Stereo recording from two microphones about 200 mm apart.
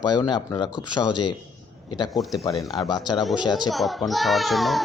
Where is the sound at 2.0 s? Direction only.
Centre (ahead or behind).